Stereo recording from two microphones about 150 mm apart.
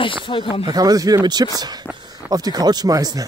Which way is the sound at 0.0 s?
35° left (ahead or behind).